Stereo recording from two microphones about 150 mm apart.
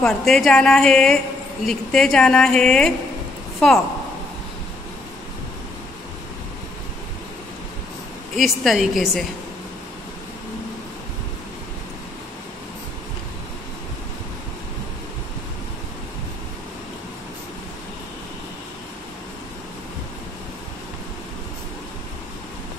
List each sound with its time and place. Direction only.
0.0 s a woman's voice: centre (ahead or behind)
8.4 s a woman's voice: centre (ahead or behind)